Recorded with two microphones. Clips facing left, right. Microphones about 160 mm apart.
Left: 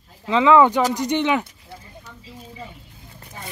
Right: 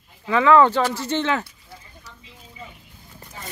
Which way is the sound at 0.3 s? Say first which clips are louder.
Left 1 dB; 20° left (ahead or behind).